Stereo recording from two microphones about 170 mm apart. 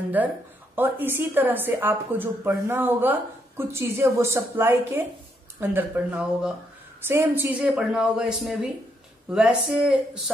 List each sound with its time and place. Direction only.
0.2 s a woman's voice: 10° right (ahead or behind)